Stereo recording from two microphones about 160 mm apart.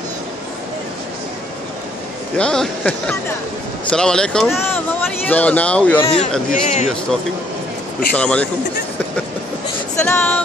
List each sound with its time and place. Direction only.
2.3 s speech: 5° left (ahead or behind)
5.9 s a man's voice: 35° left (ahead or behind)
6.5 s speech: 45° left (ahead or behind)
8.1 s speech: 10° left (ahead or behind)
10.0 s a sound: 10° left (ahead or behind)